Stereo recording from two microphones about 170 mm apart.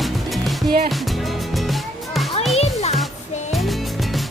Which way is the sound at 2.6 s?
40° left (ahead or behind).